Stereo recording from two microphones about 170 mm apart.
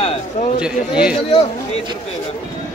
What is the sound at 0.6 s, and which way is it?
Speech, 5° right (ahead or behind).